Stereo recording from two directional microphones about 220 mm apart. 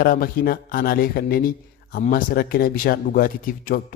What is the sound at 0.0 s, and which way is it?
A man's voice, 40° left (ahead or behind).